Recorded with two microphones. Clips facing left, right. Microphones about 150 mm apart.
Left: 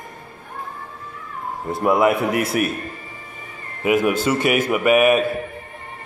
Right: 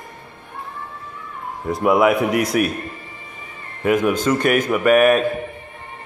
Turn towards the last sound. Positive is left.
turn(degrees=5)  # may be behind; listen again after turning